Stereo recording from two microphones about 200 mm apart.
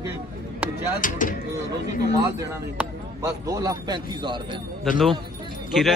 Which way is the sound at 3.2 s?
15° right (ahead or behind).